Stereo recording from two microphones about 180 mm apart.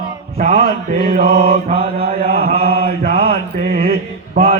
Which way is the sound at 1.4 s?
30° right (ahead or behind).